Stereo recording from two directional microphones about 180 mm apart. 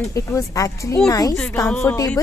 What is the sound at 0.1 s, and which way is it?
A woman's voice, 15° left (ahead or behind).